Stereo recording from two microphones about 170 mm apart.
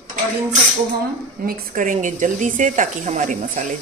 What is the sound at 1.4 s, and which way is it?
Speech, 55° right (ahead or behind).